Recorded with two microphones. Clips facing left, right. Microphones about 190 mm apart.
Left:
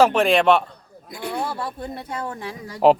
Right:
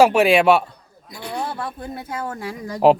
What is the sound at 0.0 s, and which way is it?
Speech, 10° right (ahead or behind).